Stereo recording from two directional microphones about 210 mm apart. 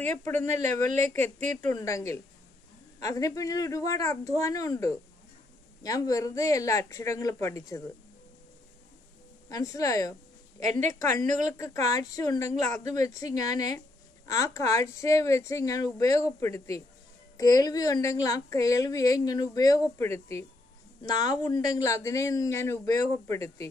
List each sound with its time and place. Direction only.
0.2 s a woman's voice: 10° left (ahead or behind)
0.8 s speech: 35° right (ahead or behind)
1.7 s a woman's voice: 15° left (ahead or behind)
9.5 s a woman's voice: 15° left (ahead or behind)